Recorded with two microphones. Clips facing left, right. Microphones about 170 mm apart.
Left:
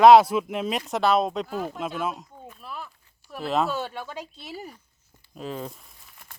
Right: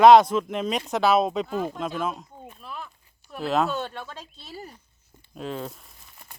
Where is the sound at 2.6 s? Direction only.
Centre (ahead or behind).